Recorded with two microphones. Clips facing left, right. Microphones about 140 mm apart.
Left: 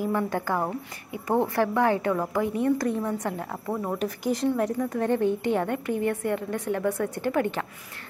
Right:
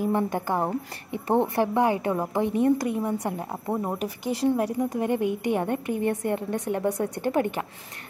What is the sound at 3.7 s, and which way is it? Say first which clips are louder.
A woman's voice: even; 25° right (ahead or behind).